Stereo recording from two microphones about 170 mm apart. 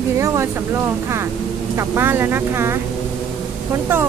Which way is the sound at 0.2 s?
15° right (ahead or behind).